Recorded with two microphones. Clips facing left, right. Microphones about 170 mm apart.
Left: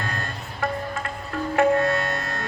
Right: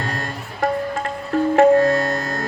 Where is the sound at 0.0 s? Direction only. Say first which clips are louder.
Right 4 dB; 40° right (ahead or behind).